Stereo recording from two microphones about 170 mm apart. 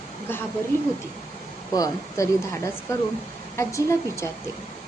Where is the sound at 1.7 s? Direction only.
20° left (ahead or behind).